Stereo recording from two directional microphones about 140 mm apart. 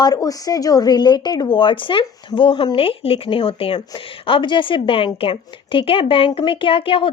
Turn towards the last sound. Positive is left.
turn(degrees=40)  # may be behind; listen again after turning